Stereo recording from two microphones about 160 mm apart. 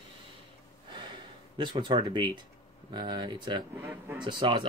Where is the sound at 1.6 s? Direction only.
30° right (ahead or behind).